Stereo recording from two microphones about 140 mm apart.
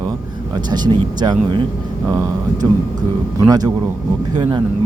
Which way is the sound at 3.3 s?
30° right (ahead or behind).